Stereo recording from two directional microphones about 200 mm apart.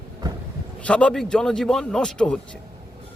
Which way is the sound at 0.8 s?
5° left (ahead or behind).